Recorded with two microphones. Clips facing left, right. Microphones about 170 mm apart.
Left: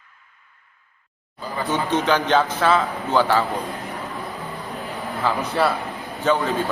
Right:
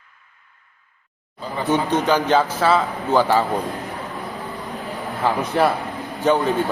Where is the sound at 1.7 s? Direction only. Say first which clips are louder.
Right 2 dB; 10° right (ahead or behind).